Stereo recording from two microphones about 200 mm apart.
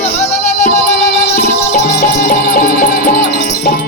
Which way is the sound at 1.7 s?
50° left (ahead or behind).